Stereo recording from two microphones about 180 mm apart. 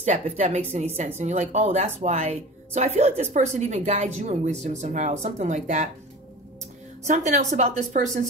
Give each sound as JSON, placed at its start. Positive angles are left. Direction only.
{"t": 0.0, "sound": "a woman's voice", "side_deg": -40}
{"t": 7.0, "sound": "a woman's voice", "side_deg": -40}